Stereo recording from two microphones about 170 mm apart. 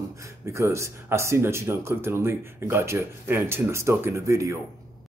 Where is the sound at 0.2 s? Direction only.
15° right (ahead or behind).